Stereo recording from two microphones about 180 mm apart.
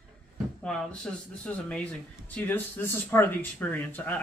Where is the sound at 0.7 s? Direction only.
5° left (ahead or behind).